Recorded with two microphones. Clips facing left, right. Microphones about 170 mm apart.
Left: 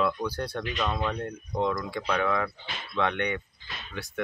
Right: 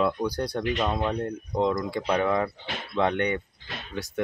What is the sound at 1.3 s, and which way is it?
Speech, 35° right (ahead or behind).